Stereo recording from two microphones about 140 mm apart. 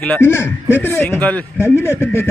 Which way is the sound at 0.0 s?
15° left (ahead or behind).